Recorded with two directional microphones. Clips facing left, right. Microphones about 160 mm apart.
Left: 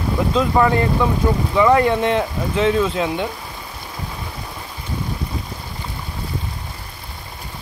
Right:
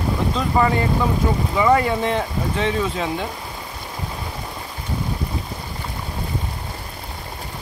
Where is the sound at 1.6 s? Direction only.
Centre (ahead or behind).